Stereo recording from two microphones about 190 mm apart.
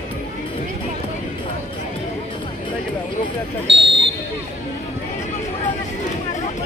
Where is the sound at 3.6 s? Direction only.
70° right (ahead or behind).